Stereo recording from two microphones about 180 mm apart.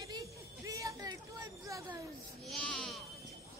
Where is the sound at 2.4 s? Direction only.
5° left (ahead or behind).